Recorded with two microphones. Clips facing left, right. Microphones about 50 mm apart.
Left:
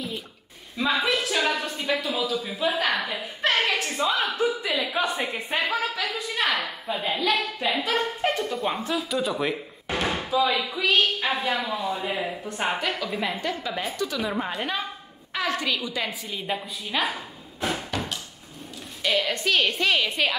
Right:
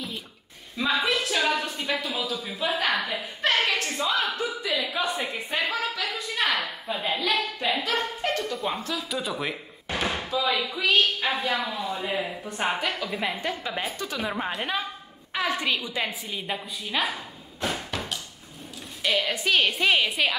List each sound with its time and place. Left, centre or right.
0.7 s a woman's voice: centre
8.2 s a sound: centre
8.5 s a woman's voice: centre
13.4 s a woman's voice: centre
15.3 s a woman's voice: centre
16.3 s a woman's voice: centre
20.1 s a woman's voice: centre